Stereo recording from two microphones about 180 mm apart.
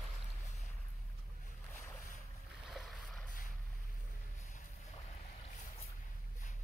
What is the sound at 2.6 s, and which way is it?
Boat, centre (ahead or behind).